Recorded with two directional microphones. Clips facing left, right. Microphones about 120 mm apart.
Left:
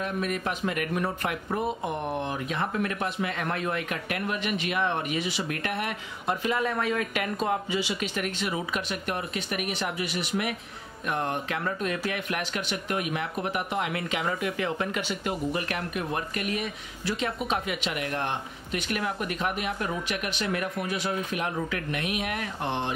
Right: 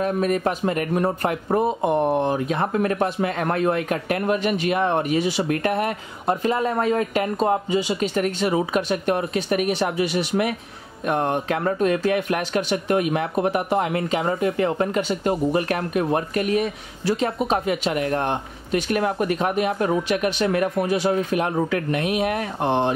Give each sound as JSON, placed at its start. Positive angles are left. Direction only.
{"t": 0.0, "sound": "speech", "side_deg": -40}
{"t": 11.6, "sound": "speech", "side_deg": -45}